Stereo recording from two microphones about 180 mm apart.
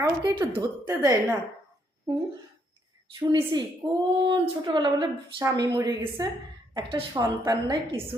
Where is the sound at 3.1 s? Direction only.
25° right (ahead or behind).